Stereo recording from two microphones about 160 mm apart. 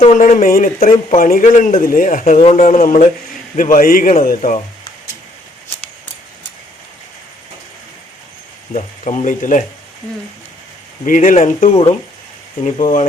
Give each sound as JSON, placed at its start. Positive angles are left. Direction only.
{"t": 0.0, "sound": "a man's voice", "side_deg": 45}
{"t": 8.7, "sound": "speech", "side_deg": 50}
{"t": 11.0, "sound": "speech", "side_deg": 55}